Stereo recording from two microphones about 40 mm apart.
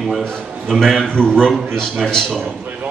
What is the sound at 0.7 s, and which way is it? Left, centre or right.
Speech, centre.